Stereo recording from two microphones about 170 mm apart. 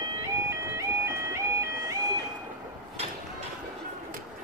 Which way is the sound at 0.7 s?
15° right (ahead or behind).